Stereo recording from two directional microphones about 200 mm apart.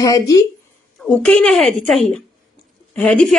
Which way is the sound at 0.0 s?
15° left (ahead or behind).